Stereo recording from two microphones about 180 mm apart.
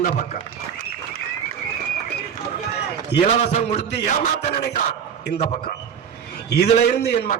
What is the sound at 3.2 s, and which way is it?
Speech, 40° left (ahead or behind).